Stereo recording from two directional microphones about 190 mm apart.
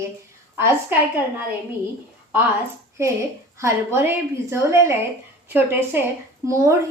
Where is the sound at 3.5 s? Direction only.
15° right (ahead or behind).